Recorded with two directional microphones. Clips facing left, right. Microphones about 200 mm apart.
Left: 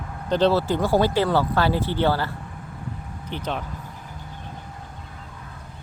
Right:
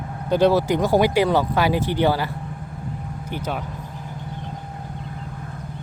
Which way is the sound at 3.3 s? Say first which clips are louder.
Right 1 dB; 10° right (ahead or behind).